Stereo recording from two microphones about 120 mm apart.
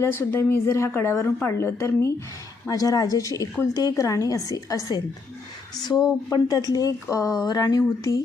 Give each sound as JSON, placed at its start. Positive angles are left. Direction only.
{"t": 0.0, "sound": "speech", "side_deg": 20}
{"t": 6.3, "sound": "speech", "side_deg": 30}